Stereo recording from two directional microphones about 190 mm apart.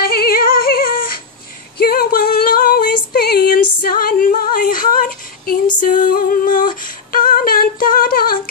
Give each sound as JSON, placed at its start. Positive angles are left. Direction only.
{"t": 0.0, "sound": "singing", "side_deg": 55}
{"t": 1.8, "sound": "female singing", "side_deg": 55}